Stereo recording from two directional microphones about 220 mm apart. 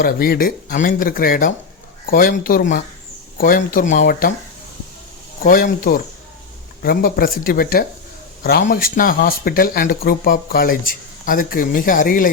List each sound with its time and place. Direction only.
0.0 s speech: 40° left (ahead or behind)
5.4 s speech: 40° left (ahead or behind)